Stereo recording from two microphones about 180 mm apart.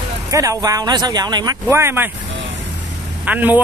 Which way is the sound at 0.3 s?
20° right (ahead or behind).